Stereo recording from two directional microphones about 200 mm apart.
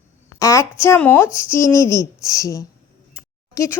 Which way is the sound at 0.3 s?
15° left (ahead or behind).